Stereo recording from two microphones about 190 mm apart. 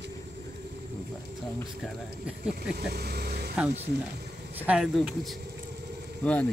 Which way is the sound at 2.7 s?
55° right (ahead or behind).